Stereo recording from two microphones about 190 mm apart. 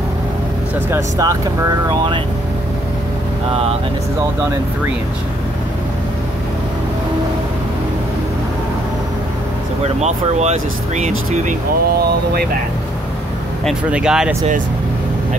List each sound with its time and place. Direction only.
0.8 s speech: 15° right (ahead or behind)
9.9 s speech: 35° right (ahead or behind)
13.7 s speech: 5° right (ahead or behind)